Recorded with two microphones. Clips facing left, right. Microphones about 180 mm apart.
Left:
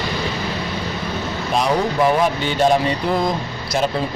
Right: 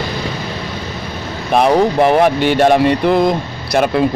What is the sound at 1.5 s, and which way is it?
Speech, 60° right (ahead or behind).